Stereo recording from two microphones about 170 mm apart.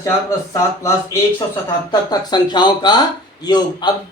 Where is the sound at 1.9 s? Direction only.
25° left (ahead or behind).